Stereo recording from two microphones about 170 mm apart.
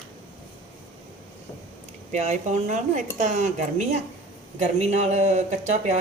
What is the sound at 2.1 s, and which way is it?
Cutlery, 45° right (ahead or behind).